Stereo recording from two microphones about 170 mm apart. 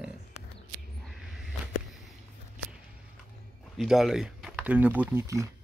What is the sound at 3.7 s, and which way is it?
Speech, centre (ahead or behind).